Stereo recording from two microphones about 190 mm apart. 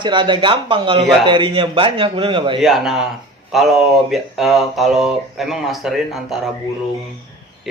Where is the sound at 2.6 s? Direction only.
Centre (ahead or behind).